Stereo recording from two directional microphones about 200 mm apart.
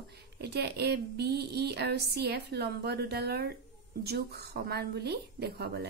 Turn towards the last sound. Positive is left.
turn(degrees=-55)  # may be behind; listen again after turning